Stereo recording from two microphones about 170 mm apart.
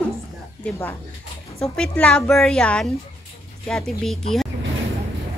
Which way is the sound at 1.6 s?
5° left (ahead or behind).